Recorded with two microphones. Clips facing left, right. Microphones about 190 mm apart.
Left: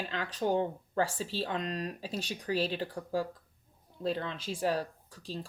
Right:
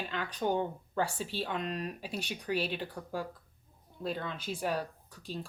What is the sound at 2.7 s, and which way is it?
Speech, 35° left (ahead or behind).